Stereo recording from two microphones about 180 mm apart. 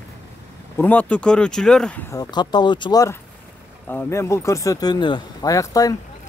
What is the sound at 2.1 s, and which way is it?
Speech, 20° left (ahead or behind).